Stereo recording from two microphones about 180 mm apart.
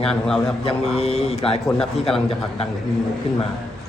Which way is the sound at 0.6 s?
35° left (ahead or behind).